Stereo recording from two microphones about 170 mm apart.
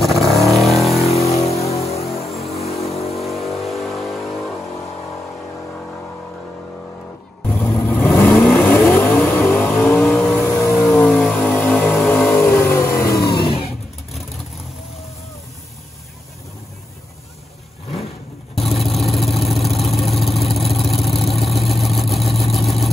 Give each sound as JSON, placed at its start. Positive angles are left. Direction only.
{"t": 0.0, "sound": "vehicle", "side_deg": 0}
{"t": 1.3, "sound": "vehicle", "side_deg": 40}
{"t": 3.1, "sound": "vehicle", "side_deg": 0}
{"t": 7.4, "sound": "vehicle", "side_deg": 10}
{"t": 18.5, "sound": "vehicle", "side_deg": 0}